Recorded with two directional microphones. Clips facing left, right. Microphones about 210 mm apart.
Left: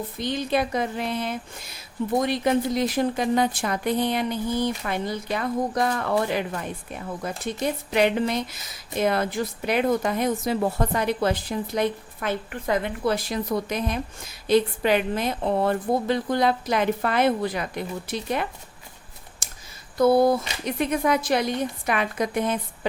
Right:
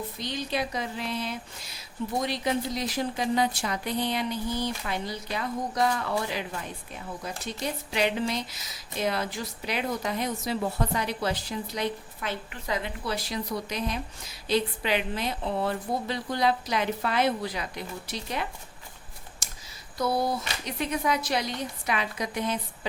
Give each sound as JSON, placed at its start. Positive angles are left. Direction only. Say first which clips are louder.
{"t": 0.2, "sound": "a woman's voice", "louder": "left 7 dB", "side_deg": 55}
{"t": 20.0, "sound": "a woman's voice", "louder": "left 9 dB", "side_deg": 55}